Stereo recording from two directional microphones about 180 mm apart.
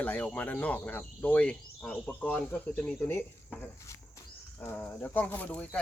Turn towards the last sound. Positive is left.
turn(degrees=10)  # may be behind; listen again after turning